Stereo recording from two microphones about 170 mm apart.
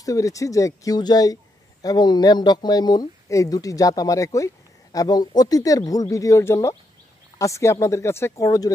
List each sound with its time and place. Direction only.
0.0 s speech: 20° left (ahead or behind)